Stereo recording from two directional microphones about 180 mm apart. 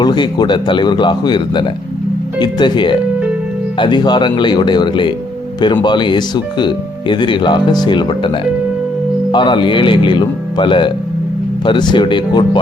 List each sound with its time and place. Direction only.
0.0 s speech: 25° left (ahead or behind)